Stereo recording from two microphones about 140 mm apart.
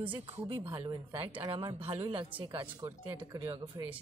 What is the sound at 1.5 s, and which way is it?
Speech, 40° right (ahead or behind).